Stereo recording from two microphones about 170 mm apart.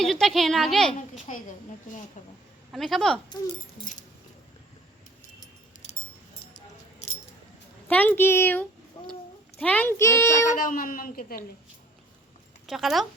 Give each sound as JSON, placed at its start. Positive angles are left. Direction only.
{"t": 0.0, "sound": "a woman's voice", "side_deg": 0}
{"t": 2.2, "sound": "a woman's voice", "side_deg": 45}
{"t": 2.7, "sound": "speech", "side_deg": 0}
{"t": 7.9, "sound": "a child's voice", "side_deg": 10}
{"t": 8.9, "sound": "a sound", "side_deg": 30}
{"t": 9.6, "sound": "a child's voice", "side_deg": 10}
{"t": 10.5, "sound": "a woman's voice", "side_deg": 55}
{"t": 12.6, "sound": "speech", "side_deg": 0}